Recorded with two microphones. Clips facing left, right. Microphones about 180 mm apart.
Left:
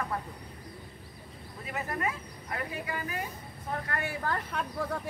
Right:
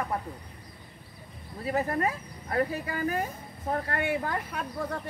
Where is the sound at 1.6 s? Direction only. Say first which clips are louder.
Right 6 dB; 35° right (ahead or behind).